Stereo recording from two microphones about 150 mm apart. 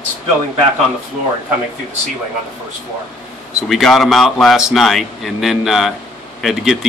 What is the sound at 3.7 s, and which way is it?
Speech, centre (ahead or behind).